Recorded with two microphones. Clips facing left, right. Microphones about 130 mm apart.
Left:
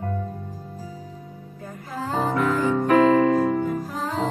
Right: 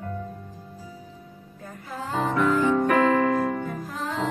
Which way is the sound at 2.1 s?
35° left (ahead or behind).